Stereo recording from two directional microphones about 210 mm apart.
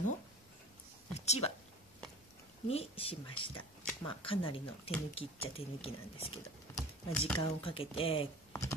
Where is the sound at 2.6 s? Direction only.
30° left (ahead or behind).